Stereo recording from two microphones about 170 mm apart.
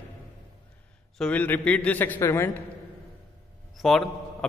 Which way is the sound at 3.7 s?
Centre (ahead or behind).